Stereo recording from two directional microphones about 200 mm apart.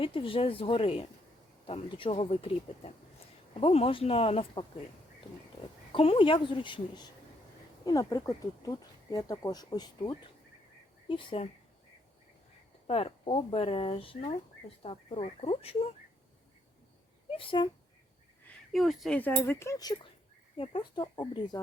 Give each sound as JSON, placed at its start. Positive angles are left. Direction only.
{"t": 0.0, "sound": "speech", "side_deg": 25}
{"t": 5.9, "sound": "speech", "side_deg": 25}
{"t": 12.9, "sound": "speech", "side_deg": 30}
{"t": 17.3, "sound": "speech", "side_deg": 25}
{"t": 18.4, "sound": "speech", "side_deg": 0}